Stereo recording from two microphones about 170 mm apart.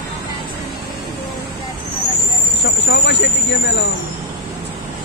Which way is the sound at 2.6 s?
90° left.